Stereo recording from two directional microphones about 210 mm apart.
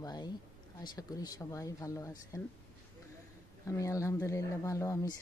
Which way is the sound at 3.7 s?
15° left (ahead or behind).